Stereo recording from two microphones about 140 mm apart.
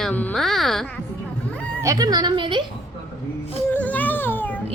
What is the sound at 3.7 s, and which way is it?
Baby cry, 10° left (ahead or behind).